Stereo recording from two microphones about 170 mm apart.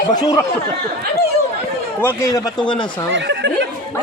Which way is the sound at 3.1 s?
90° right.